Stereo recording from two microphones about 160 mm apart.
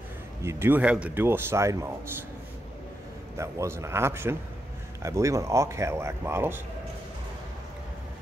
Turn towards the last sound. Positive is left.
turn(degrees=-15)  # may be behind; listen again after turning